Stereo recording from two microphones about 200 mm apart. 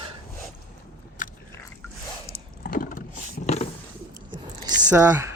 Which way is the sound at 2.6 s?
45° left (ahead or behind).